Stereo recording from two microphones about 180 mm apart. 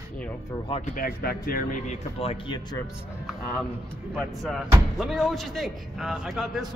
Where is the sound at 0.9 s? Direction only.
55° left (ahead or behind).